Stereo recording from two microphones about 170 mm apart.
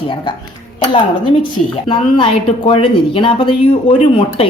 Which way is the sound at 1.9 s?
30° left (ahead or behind).